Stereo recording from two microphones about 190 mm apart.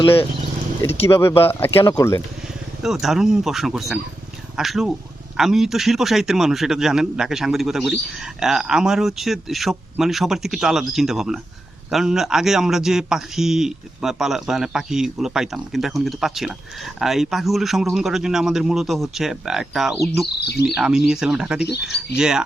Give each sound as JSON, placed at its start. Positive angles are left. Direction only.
{"t": 1.0, "sound": "speech", "side_deg": 15}
{"t": 2.8, "sound": "a man's voice", "side_deg": 0}
{"t": 20.4, "sound": "speech", "side_deg": 60}
{"t": 20.7, "sound": "a man's voice", "side_deg": -5}